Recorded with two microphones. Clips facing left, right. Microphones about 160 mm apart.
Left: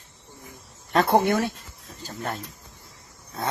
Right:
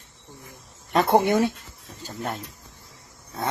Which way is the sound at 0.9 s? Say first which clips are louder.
Right 1 dB; 15° right (ahead or behind).